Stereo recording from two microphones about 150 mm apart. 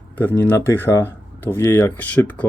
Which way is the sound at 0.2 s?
15° left (ahead or behind).